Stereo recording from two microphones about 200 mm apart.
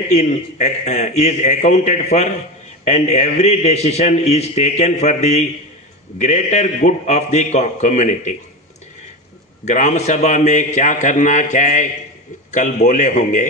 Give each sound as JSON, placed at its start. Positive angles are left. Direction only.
{"t": 0.1, "sound": "a man's voice", "side_deg": 35}
{"t": 9.7, "sound": "a man's voice", "side_deg": 35}